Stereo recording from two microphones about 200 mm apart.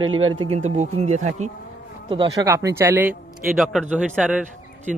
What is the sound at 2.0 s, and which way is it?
A man's voice, 25° right (ahead or behind).